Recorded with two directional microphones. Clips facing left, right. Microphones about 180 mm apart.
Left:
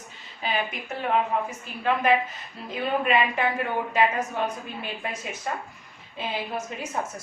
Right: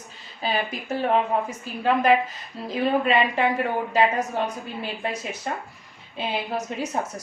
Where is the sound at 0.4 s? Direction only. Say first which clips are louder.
Right 3 dB; 35° right (ahead or behind).